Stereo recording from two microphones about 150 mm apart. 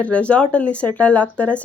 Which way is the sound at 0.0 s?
10° left (ahead or behind).